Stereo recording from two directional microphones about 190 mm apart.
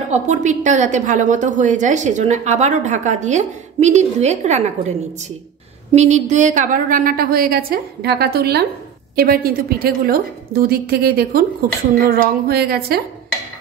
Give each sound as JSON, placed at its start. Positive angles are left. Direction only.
{"t": 0.1, "sound": "a woman's voice", "side_deg": -40}